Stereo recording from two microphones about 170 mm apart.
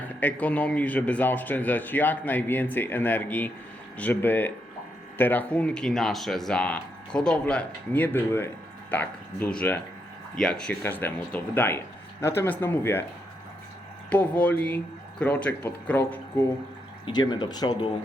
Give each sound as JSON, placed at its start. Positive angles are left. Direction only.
{"t": 0.2, "sound": "speech", "side_deg": 10}
{"t": 14.1, "sound": "speech", "side_deg": 10}
{"t": 17.1, "sound": "speech", "side_deg": 25}